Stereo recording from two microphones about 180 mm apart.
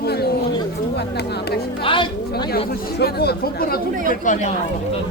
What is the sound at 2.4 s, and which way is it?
Speech, 55° left (ahead or behind).